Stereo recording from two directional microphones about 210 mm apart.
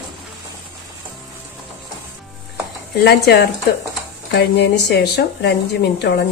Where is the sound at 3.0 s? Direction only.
50° left (ahead or behind).